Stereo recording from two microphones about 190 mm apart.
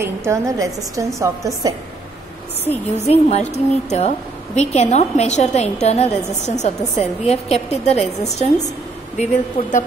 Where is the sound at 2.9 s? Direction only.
35° left (ahead or behind).